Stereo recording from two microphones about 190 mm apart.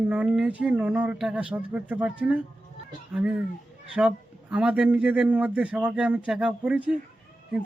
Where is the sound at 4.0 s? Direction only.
5° right (ahead or behind).